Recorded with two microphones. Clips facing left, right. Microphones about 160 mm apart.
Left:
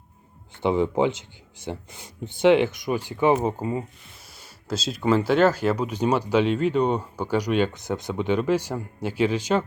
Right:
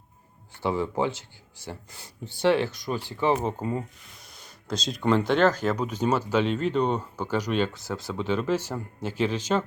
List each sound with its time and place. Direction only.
0.6 s speech: 20° left (ahead or behind)